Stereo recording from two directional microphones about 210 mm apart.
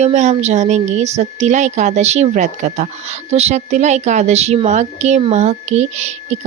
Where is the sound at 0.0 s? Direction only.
35° right (ahead or behind).